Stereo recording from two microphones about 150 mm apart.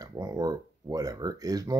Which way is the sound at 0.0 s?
25° right (ahead or behind).